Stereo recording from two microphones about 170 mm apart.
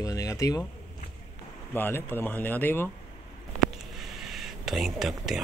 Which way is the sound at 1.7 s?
10° left (ahead or behind).